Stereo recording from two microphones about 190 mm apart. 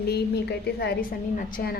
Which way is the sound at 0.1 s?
60° left (ahead or behind).